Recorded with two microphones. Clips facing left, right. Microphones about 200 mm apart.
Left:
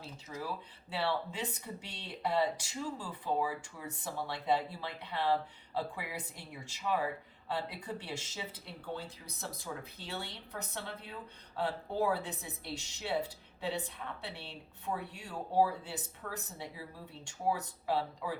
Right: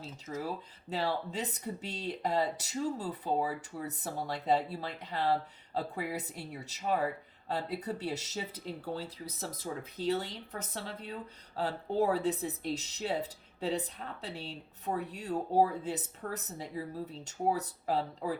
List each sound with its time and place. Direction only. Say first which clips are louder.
0.3 s speech: right 4 dB; 40° right (ahead or behind)